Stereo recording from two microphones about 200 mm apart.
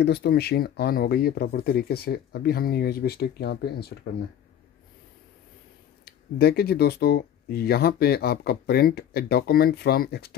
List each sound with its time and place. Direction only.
0.0 s speech: 55° left (ahead or behind)
6.0 s speech: 50° left (ahead or behind)